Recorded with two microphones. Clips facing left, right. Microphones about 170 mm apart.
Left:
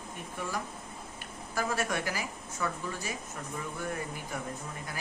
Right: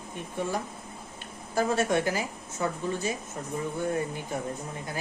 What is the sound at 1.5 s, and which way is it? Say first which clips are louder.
Speech: right 7 dB; 25° right (ahead or behind).